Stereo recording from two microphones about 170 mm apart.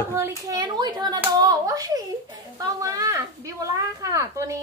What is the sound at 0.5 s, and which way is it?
Speech, 25° right (ahead or behind).